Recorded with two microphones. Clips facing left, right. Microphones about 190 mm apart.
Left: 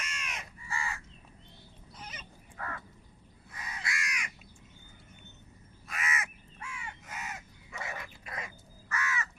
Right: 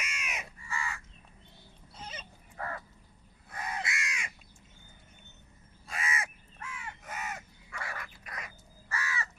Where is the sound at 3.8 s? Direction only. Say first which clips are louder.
Right 1 dB; 25° right (ahead or behind).